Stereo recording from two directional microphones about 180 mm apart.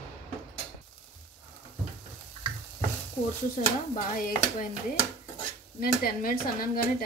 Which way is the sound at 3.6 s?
50° left (ahead or behind).